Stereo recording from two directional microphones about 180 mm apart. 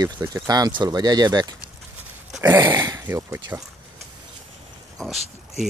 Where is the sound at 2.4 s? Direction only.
15° right (ahead or behind).